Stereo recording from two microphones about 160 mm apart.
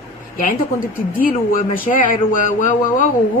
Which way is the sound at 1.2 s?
60° left (ahead or behind).